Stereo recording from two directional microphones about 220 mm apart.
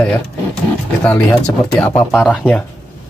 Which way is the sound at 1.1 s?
5° left (ahead or behind).